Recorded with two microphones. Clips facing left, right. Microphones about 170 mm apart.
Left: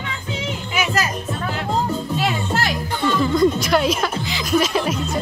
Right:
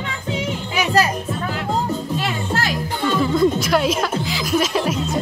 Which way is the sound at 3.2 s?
5° right (ahead or behind).